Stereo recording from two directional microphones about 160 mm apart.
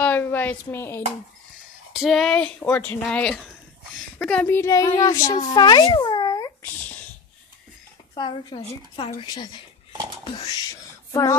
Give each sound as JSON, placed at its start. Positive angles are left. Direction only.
{"t": 0.0, "sound": "a sound", "side_deg": 10}
{"t": 2.0, "sound": "a woman's voice", "side_deg": 0}
{"t": 8.1, "sound": "a child's voice", "side_deg": 30}